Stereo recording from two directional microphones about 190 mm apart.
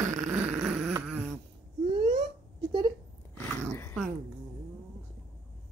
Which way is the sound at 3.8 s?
10° left (ahead or behind).